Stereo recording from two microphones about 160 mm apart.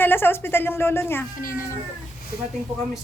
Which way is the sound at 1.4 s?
60° left (ahead or behind).